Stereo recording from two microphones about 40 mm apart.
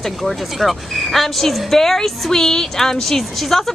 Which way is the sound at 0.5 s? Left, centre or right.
Centre.